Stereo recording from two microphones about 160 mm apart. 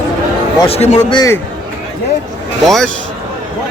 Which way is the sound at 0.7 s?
40° left (ahead or behind).